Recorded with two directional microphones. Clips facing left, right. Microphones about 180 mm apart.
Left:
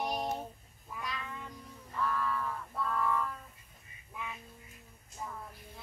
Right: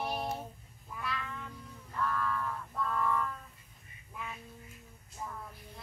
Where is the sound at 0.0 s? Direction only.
15° left (ahead or behind).